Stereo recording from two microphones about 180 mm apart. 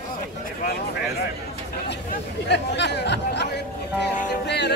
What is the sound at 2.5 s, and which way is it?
Speech, 70° left (ahead or behind).